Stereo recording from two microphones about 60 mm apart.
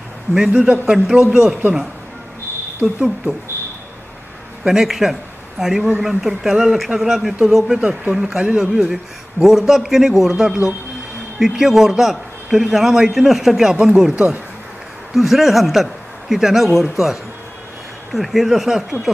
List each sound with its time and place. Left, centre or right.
0.3 s a man's voice: centre
2.8 s speech: centre
4.6 s a man's voice: centre
14.1 s speech: right
15.1 s a man's voice: centre